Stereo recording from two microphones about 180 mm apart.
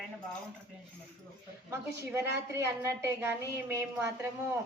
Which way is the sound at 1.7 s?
15° right (ahead or behind).